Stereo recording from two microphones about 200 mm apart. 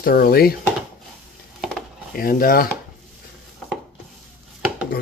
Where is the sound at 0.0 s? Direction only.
50° left (ahead or behind).